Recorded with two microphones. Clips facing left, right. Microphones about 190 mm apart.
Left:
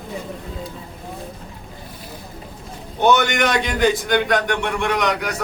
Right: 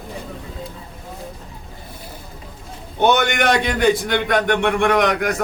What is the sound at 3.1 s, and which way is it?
A man's voice, 55° right (ahead or behind).